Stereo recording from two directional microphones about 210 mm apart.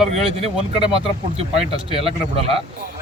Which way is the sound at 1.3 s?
25° right (ahead or behind).